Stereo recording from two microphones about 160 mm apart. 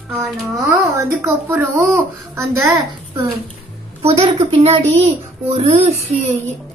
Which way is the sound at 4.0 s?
35° right (ahead or behind).